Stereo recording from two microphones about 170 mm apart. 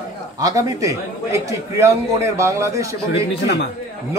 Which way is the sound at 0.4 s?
20° right (ahead or behind).